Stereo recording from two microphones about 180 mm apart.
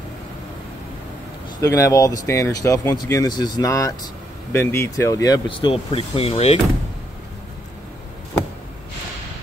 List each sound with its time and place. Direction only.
1.6 s speech: 20° left (ahead or behind); by 6.6 s 35° left (ahead or behind)